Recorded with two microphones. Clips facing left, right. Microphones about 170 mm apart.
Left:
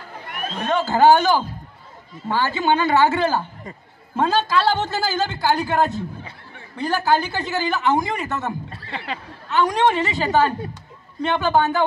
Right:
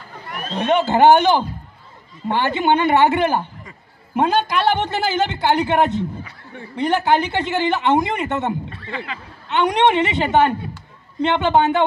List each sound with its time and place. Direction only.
0.6 s a man's voice: 20° right (ahead or behind)
8.9 s speech: 35° left (ahead or behind)
9.5 s a man's voice: 20° right (ahead or behind)